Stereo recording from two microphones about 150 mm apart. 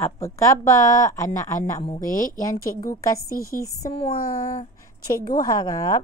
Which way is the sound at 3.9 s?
40° left (ahead or behind).